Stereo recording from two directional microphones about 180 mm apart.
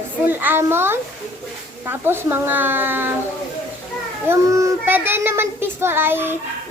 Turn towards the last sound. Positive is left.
turn(degrees=-10)  # may be behind; listen again after turning